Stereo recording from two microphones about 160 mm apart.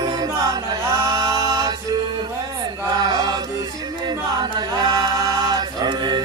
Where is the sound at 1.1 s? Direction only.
25° right (ahead or behind).